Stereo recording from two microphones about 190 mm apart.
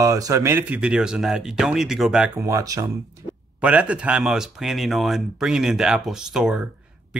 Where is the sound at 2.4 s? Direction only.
15° right (ahead or behind).